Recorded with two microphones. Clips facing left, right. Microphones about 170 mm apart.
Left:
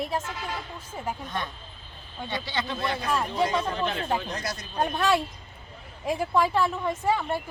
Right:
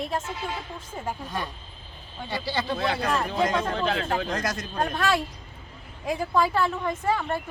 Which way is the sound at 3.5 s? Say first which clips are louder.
Right 2 dB; 90° right.